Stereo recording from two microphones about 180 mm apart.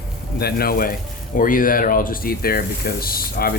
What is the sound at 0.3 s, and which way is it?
Speech, 60° left (ahead or behind).